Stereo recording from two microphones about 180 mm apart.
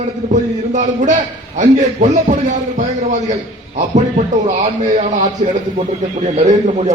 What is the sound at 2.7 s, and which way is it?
Speech, 40° right (ahead or behind).